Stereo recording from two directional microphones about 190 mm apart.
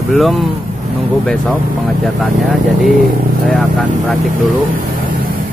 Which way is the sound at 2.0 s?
Centre (ahead or behind).